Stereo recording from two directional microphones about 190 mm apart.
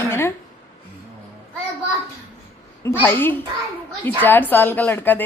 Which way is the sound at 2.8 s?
10° left (ahead or behind).